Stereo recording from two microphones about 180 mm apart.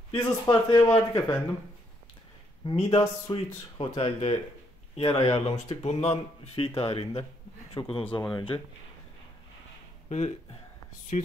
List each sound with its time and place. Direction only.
0.2 s speech: 20° left (ahead or behind)
2.6 s a man's voice: 30° left (ahead or behind)
10.0 s a man's voice: 35° left (ahead or behind)